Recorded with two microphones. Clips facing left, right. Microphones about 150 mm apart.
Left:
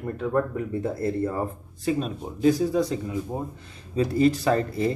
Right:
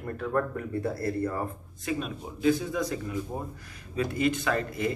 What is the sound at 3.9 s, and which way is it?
Speech, 35° left (ahead or behind).